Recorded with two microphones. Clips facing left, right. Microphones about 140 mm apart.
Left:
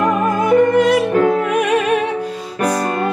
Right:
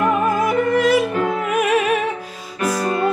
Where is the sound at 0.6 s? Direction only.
5° right (ahead or behind).